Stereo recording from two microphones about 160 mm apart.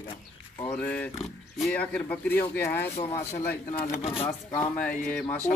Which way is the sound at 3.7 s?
35° left (ahead or behind).